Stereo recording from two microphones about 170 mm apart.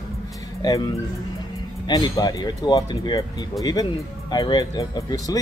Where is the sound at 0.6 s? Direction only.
20° left (ahead or behind).